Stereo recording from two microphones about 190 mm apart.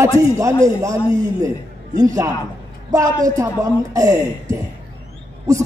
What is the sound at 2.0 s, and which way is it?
A man's voice, 20° right (ahead or behind).